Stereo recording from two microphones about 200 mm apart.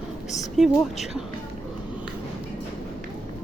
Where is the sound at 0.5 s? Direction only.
Centre (ahead or behind).